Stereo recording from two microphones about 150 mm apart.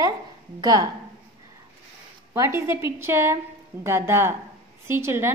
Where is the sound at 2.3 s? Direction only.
20° right (ahead or behind).